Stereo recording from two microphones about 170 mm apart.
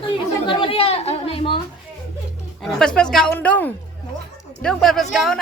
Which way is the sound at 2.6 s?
5° left (ahead or behind).